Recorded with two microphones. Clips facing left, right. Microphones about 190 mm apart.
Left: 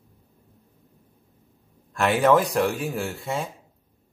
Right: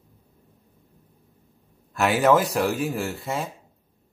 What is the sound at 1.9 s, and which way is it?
A man's voice, 5° right (ahead or behind).